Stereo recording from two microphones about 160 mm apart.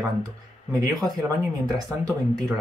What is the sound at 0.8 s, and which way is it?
Speech, 20° right (ahead or behind).